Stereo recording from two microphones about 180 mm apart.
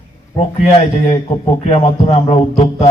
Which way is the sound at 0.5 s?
40° left (ahead or behind).